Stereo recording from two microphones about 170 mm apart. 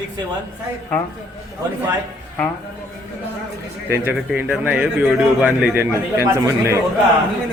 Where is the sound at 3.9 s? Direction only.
10° right (ahead or behind).